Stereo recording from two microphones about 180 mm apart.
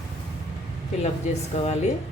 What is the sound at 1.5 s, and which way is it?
Speech, 35° left (ahead or behind).